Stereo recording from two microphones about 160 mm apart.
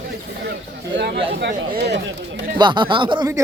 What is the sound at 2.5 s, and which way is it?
Speech, 30° right (ahead or behind).